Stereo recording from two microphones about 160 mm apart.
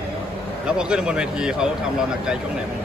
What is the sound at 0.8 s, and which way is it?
Speech, 5° right (ahead or behind).